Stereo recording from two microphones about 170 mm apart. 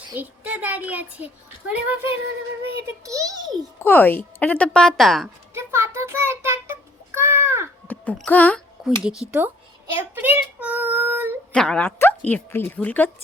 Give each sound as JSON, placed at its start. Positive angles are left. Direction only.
{"t": 0.1, "sound": "a child's voice", "side_deg": -10}
{"t": 3.0, "sound": "a child's voice", "side_deg": -20}
{"t": 3.8, "sound": "speech", "side_deg": 10}
{"t": 5.5, "sound": "child singing", "side_deg": -15}
{"t": 7.9, "sound": "speech", "side_deg": 10}
{"t": 8.8, "sound": "speech", "side_deg": -5}
{"t": 9.3, "sound": "child singing", "side_deg": -15}
{"t": 11.5, "sound": "speech", "side_deg": 5}